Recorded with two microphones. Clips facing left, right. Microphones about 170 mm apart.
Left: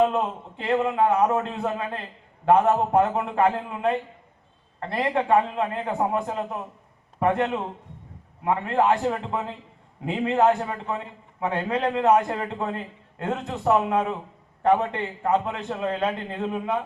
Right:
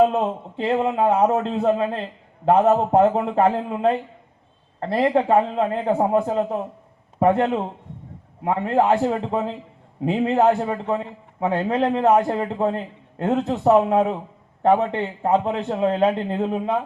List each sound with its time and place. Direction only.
0.1 s a man's voice: 30° right (ahead or behind)